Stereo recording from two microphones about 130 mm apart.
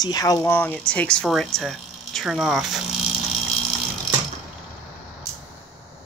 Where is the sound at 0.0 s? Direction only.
30° left (ahead or behind).